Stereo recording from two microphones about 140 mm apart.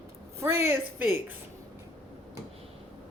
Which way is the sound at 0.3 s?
20° right (ahead or behind).